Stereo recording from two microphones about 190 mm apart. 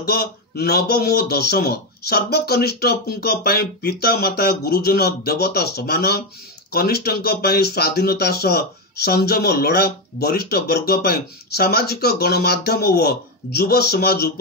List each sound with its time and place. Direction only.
0.0 s speech: 55° left (ahead or behind)